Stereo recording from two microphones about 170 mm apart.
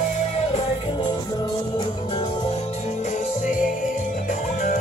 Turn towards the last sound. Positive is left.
turn(degrees=50)  # may be behind; listen again after turning